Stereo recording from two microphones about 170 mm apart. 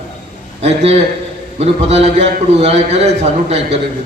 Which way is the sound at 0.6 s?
40° right (ahead or behind).